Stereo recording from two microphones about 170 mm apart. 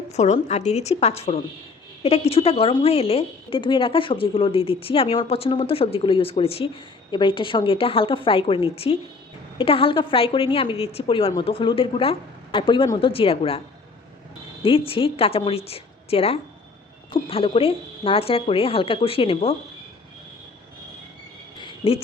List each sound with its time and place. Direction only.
0.1 s a woman's voice: 40° left (ahead or behind)
14.6 s a woman's voice: 30° left (ahead or behind)
21.6 s a sound: 30° left (ahead or behind)